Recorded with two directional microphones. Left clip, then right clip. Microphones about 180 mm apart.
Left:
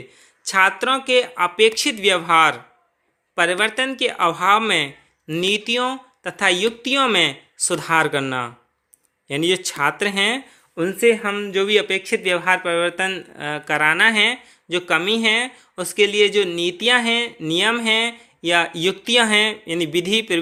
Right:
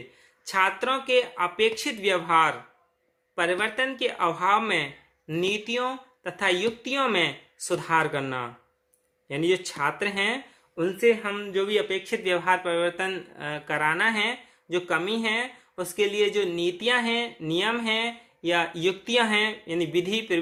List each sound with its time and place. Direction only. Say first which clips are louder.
0.4 s speech: left 7 dB; 45° left (ahead or behind)
11.0 s speech: left 6 dB; 55° left (ahead or behind)
11.3 s speech: left 7 dB; 40° left (ahead or behind)